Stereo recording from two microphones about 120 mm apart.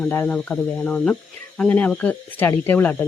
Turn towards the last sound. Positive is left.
turn(degrees=15)  # may be behind; listen again after turning